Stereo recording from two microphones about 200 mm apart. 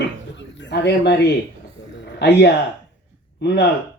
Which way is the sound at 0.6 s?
60° left (ahead or behind).